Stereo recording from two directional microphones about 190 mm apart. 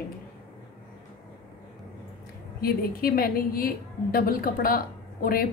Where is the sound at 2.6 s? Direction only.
50° left (ahead or behind).